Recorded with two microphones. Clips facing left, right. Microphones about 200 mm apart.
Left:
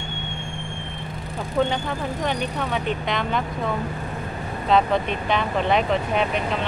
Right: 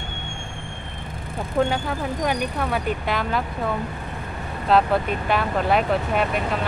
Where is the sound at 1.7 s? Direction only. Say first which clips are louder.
Right 1 dB; 5° right (ahead or behind).